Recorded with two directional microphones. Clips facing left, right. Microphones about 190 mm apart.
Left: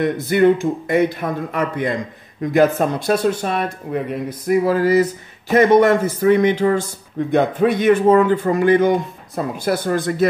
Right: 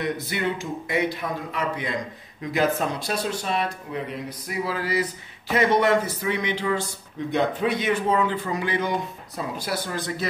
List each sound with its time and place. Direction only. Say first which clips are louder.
0.0 s a man's voice: left 12 dB; 50° left (ahead or behind)